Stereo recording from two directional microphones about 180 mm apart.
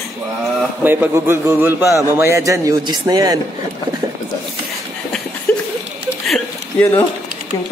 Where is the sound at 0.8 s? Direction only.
10° right (ahead or behind).